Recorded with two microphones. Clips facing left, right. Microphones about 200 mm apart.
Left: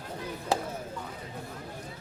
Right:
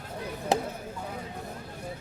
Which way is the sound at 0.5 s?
20° right (ahead or behind).